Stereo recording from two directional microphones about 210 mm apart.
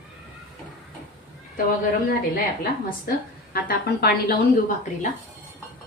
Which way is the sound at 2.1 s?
45° left (ahead or behind).